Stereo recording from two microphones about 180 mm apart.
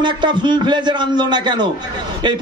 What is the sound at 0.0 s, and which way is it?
A man's voice, 25° right (ahead or behind).